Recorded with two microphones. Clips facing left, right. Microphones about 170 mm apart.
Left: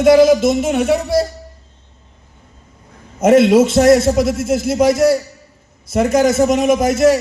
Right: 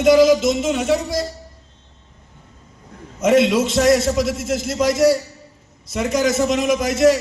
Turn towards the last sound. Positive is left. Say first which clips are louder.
# left 3 dB
turn(degrees=55)  # may be behind; listen again after turning